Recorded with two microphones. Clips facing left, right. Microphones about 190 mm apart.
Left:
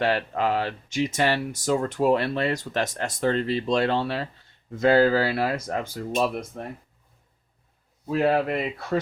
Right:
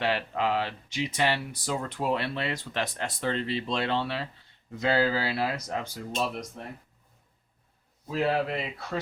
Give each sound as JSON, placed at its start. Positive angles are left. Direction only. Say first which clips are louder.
{"t": 0.0, "sound": "speech", "louder": "left 4 dB", "side_deg": 45}
{"t": 8.1, "sound": "speech", "louder": "left 5 dB", "side_deg": 55}